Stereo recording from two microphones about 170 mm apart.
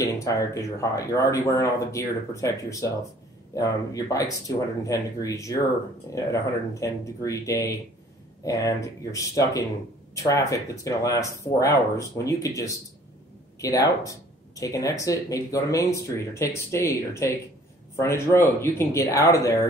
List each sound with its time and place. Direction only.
0.1 s speech: 20° left (ahead or behind)